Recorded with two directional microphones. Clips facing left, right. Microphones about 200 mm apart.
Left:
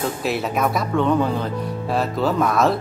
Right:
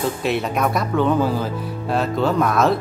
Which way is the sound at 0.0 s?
Centre (ahead or behind).